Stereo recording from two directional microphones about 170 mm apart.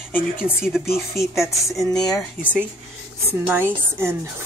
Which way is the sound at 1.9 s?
5° left (ahead or behind).